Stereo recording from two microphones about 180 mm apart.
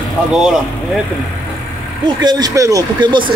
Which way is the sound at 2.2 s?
20° right (ahead or behind).